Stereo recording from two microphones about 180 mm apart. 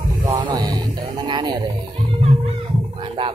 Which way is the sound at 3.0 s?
30° right (ahead or behind).